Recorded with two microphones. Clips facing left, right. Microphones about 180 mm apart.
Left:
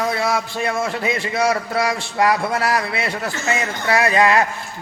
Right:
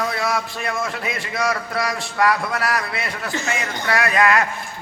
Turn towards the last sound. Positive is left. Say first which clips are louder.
# left 2 dB
turn(degrees=25)  # may be behind; listen again after turning